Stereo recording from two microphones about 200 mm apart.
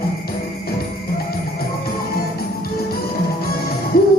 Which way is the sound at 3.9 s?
45° left (ahead or behind).